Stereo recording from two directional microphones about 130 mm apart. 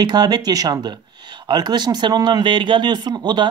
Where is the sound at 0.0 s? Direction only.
30° right (ahead or behind).